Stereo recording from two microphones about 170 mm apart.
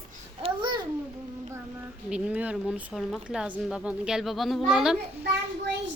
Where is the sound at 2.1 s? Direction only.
5° right (ahead or behind).